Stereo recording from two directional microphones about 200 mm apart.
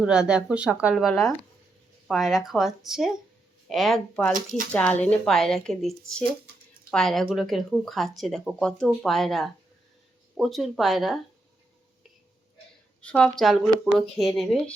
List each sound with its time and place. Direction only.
0.0 s speech: 5° right (ahead or behind)
13.0 s speech: 5° left (ahead or behind)